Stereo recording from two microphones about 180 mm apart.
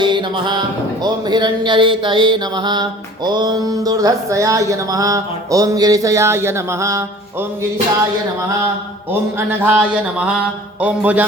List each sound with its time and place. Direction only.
0.0 s music: 25° right (ahead or behind)
1.0 s speech: 25° right (ahead or behind)
9.5 s a sound: 10° right (ahead or behind)